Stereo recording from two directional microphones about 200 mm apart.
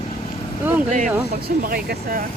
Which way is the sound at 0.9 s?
45° right (ahead or behind).